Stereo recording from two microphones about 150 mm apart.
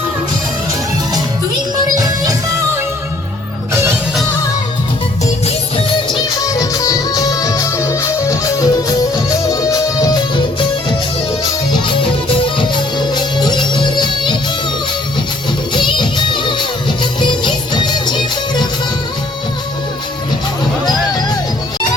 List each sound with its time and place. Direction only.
6.5 s music: 25° left (ahead or behind)
12.5 s music: 30° left (ahead or behind)
15.7 s music: 30° left (ahead or behind)
20.8 s music: 25° left (ahead or behind)